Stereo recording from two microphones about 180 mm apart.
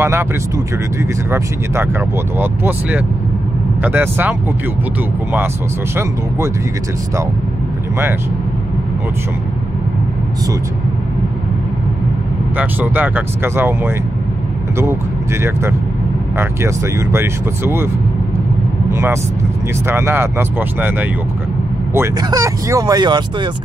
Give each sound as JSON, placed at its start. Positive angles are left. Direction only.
{"t": 0.0, "sound": "speech", "side_deg": -15}
{"t": 2.3, "sound": "speech", "side_deg": -10}
{"t": 12.5, "sound": "speech", "side_deg": -10}
{"t": 16.3, "sound": "speech", "side_deg": -15}
{"t": 18.9, "sound": "speech", "side_deg": -15}